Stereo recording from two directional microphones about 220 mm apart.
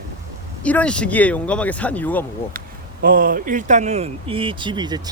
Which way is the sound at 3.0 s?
40° right (ahead or behind).